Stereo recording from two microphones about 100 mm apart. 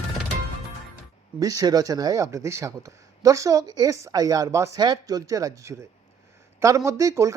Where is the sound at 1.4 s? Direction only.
35° right (ahead or behind).